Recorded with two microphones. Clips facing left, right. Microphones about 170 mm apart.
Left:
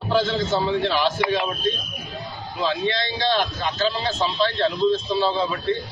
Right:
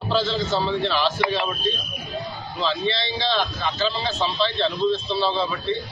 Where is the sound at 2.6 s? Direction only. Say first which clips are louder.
Left 1 dB; 15° left (ahead or behind).